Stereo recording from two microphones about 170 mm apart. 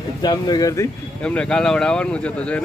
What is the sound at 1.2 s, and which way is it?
Speech, 5° left (ahead or behind).